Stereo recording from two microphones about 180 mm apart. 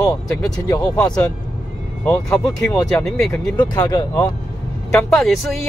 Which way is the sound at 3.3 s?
20° left (ahead or behind).